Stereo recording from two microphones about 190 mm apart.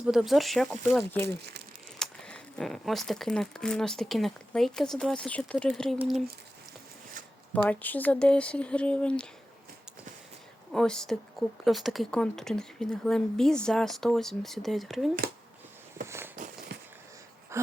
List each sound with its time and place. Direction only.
0.0 s speech: centre (ahead or behind)
2.0 s speech: 5° left (ahead or behind)
7.7 s speech: 10° left (ahead or behind)
10.7 s speech: 5° left (ahead or behind)
16.0 s a sound: 15° right (ahead or behind)
16.3 s a sound: 45° right (ahead or behind)
17.5 s wheeze: 15° right (ahead or behind)